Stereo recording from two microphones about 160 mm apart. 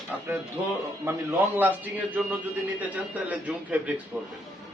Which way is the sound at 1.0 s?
15° right (ahead or behind).